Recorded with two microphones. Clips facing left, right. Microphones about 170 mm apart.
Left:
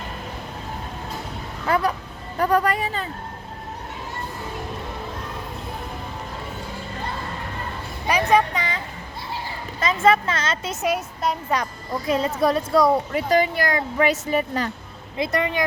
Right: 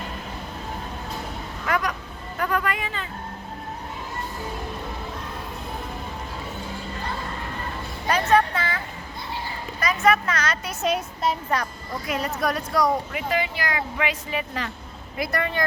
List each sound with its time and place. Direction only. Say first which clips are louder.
1.6 s speech: left 4 dB; 30° left (ahead or behind)
8.0 s a sound: left 1 dB; 15° left (ahead or behind)
9.8 s a woman's voice: left 3 dB; 25° left (ahead or behind)
10.8 s a woman's voice: even; centre (ahead or behind)
12.0 s a woman's voice: left 5 dB; 25° left (ahead or behind)
13.1 s speech: left 6 dB; 40° left (ahead or behind)
15.2 s a woman's voice: left 3 dB; 20° left (ahead or behind)